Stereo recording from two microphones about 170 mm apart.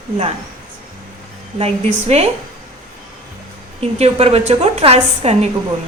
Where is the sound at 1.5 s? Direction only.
40° right (ahead or behind).